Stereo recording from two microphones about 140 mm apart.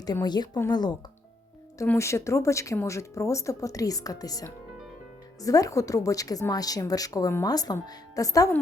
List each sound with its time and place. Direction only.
0.0 s speech: 30° left (ahead or behind)
1.9 s speech: 20° left (ahead or behind)